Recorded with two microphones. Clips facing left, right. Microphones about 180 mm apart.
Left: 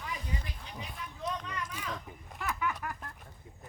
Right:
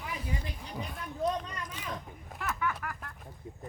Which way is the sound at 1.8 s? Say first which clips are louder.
Even; 5° right (ahead or behind).